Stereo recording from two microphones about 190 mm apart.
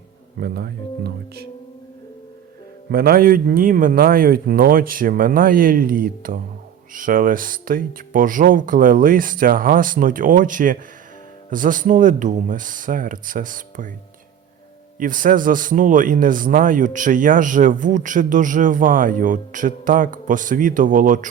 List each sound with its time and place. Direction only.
0.3 s speech: 60° right (ahead or behind)
2.9 s speech: 50° right (ahead or behind)
14.9 s speech: 45° right (ahead or behind)